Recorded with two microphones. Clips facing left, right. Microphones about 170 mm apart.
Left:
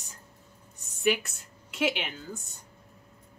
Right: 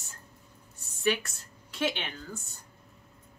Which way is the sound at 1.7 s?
5° left (ahead or behind).